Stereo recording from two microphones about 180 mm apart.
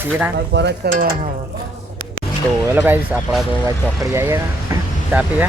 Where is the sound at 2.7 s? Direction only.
10° right (ahead or behind).